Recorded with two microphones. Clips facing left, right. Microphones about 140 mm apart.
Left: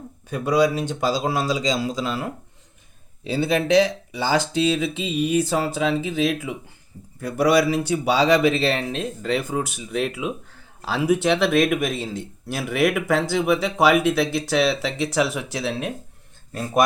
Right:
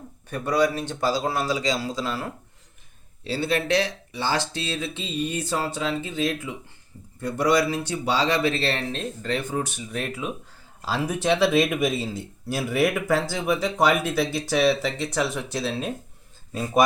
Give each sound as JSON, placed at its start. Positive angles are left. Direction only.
{"t": 0.3, "sound": "speech", "side_deg": 15}
{"t": 4.8, "sound": "mantra", "side_deg": 90}
{"t": 5.4, "sound": "speech", "side_deg": 10}
{"t": 6.0, "sound": "mantra", "side_deg": 90}
{"t": 7.2, "sound": "speech", "side_deg": 5}